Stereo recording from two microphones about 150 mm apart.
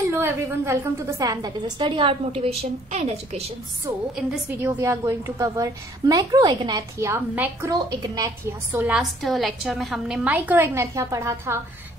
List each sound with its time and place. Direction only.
0.1 s a woman's voice: 15° right (ahead or behind); by 3.5 s 45° right (ahead or behind)
4.6 s a woman's voice: 15° right (ahead or behind)
7.7 s a woman's voice: 25° right (ahead or behind)
9.2 s a woman's voice: centre (ahead or behind); by 11.6 s 20° right (ahead or behind)